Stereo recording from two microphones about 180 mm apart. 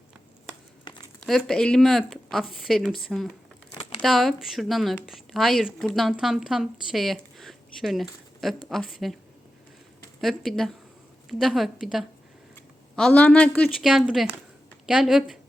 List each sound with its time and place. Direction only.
1.2 s speech: centre (ahead or behind)
3.8 s crumpling: 35° left (ahead or behind)
4.0 s speech: centre (ahead or behind)
10.2 s speech: centre (ahead or behind)